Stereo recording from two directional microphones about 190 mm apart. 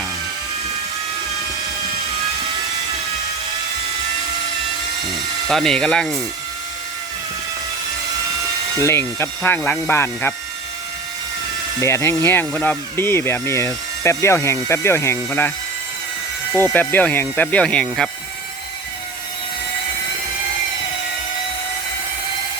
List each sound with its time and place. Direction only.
5.5 s speech: centre (ahead or behind)
8.8 s speech: 15° left (ahead or behind)
11.8 s speech: 15° left (ahead or behind)
16.5 s speech: 15° right (ahead or behind)
16.7 s speech: 10° left (ahead or behind)